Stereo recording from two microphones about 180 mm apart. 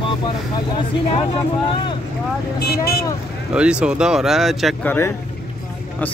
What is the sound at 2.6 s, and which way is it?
Speech, 60° left (ahead or behind).